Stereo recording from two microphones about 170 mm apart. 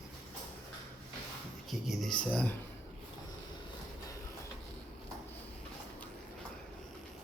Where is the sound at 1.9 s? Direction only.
Centre (ahead or behind).